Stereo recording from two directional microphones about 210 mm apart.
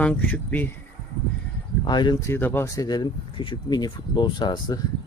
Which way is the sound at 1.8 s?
20° left (ahead or behind).